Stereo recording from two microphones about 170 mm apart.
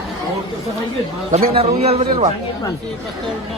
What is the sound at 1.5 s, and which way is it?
Speech, 35° right (ahead or behind).